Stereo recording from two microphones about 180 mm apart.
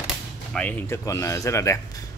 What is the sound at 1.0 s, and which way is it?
Speech, 15° left (ahead or behind).